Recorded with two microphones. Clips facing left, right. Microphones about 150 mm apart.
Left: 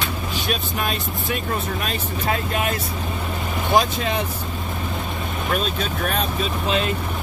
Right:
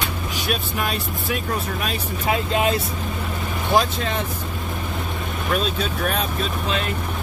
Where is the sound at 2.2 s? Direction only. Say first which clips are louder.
Right 3 dB; 20° right (ahead or behind).